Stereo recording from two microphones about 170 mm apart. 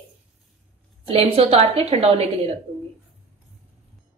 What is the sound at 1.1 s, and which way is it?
A woman's voice, 35° right (ahead or behind).